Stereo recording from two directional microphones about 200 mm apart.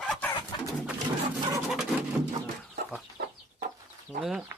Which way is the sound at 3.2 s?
55° right (ahead or behind).